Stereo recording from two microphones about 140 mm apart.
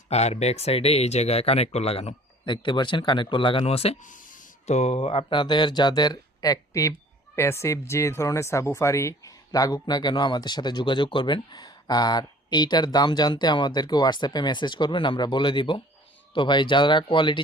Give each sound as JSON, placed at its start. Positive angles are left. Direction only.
{"t": 0.1, "sound": "speech", "side_deg": 50}
{"t": 2.5, "sound": "speech", "side_deg": 35}
{"t": 4.0, "sound": "speech", "side_deg": 70}